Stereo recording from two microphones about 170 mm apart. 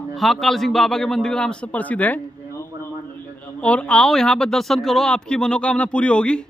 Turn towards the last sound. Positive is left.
turn(degrees=5)  # may be behind; listen again after turning